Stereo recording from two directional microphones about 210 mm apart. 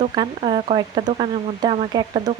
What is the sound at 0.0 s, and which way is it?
Speech, 25° right (ahead or behind).